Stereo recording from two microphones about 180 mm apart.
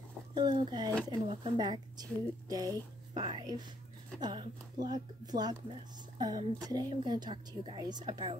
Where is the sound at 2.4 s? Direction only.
20° right (ahead or behind).